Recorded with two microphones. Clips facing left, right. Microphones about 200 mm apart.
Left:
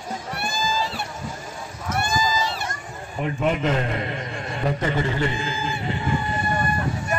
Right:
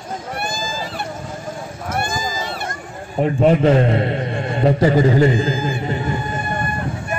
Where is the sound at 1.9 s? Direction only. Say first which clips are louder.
Even; 55° right (ahead or behind).